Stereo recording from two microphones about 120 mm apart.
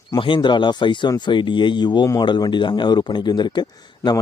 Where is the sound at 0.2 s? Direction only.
40° left (ahead or behind).